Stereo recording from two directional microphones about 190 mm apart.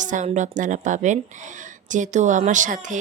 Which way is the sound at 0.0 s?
40° right (ahead or behind).